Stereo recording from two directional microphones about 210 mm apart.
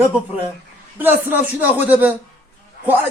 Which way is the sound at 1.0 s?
10° right (ahead or behind).